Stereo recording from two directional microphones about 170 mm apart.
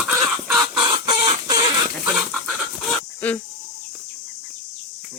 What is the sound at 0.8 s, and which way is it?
Chicken, 25° right (ahead or behind).